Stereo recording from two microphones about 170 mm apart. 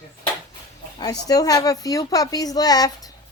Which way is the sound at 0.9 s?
20° left (ahead or behind).